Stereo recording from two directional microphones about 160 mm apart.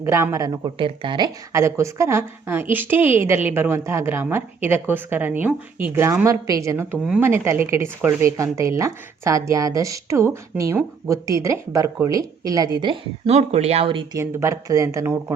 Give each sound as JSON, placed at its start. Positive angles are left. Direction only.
{"t": 0.0, "sound": "speech", "side_deg": -15}
{"t": 13.2, "sound": "speech", "side_deg": -40}
{"t": 14.1, "sound": "speech", "side_deg": -20}